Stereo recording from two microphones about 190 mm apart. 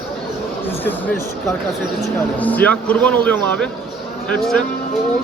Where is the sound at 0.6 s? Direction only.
10° left (ahead or behind).